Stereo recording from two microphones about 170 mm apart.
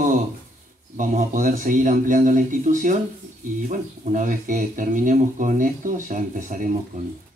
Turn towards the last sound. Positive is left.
turn(degrees=-45)  # may be behind; listen again after turning